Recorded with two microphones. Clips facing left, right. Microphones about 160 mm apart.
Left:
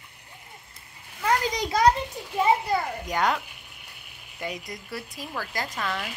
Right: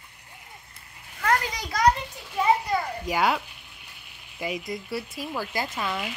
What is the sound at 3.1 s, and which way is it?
Speech, 5° right (ahead or behind).